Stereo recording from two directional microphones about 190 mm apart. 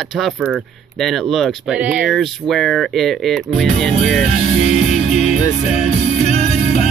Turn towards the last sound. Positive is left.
turn(degrees=35)  # may be behind; listen again after turning